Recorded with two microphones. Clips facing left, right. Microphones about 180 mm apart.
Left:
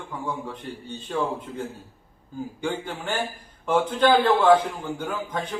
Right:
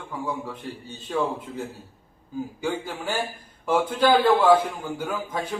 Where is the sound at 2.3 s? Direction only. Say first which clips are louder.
Right 1 dB; 5° right (ahead or behind).